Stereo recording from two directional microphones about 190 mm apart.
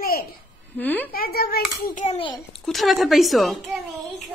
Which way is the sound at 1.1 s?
55° left (ahead or behind).